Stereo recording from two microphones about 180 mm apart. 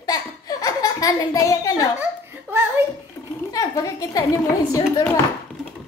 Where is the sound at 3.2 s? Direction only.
15° left (ahead or behind).